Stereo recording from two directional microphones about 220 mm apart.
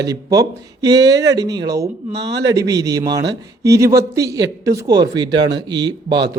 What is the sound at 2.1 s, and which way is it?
Speech, 50° right (ahead or behind).